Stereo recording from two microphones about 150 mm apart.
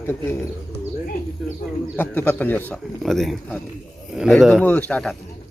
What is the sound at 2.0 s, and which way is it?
Speech, 15° left (ahead or behind).